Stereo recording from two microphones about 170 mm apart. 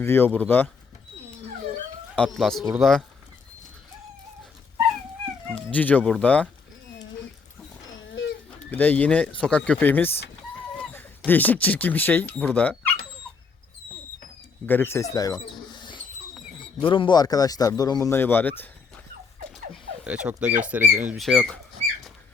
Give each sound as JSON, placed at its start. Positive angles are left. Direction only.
{"t": 0.0, "sound": "speech", "side_deg": 15}
{"t": 2.1, "sound": "speech", "side_deg": 5}
{"t": 5.7, "sound": "speech", "side_deg": 10}
{"t": 7.9, "sound": "a sound", "side_deg": 90}
{"t": 8.7, "sound": "speech", "side_deg": 10}
{"t": 14.7, "sound": "speech", "side_deg": 15}
{"t": 15.8, "sound": "a sound", "side_deg": 30}
{"t": 16.8, "sound": "speech", "side_deg": 30}
{"t": 20.1, "sound": "speech", "side_deg": -5}